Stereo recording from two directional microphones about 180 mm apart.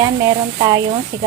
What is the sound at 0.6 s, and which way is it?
Speech, 25° right (ahead or behind).